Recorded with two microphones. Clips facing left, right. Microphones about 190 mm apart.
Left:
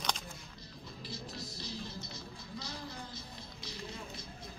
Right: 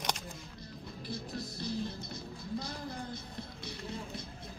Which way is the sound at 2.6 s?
55° right (ahead or behind).